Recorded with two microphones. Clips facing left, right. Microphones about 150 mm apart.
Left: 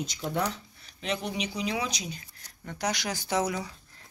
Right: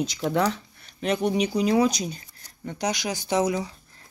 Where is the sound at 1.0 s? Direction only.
50° right (ahead or behind).